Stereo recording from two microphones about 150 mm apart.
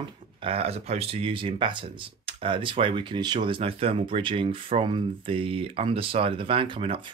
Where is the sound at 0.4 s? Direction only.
40° right (ahead or behind).